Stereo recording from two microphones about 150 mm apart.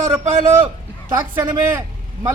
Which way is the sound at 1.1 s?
15° right (ahead or behind).